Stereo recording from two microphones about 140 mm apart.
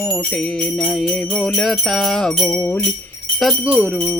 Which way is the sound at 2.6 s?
20° left (ahead or behind).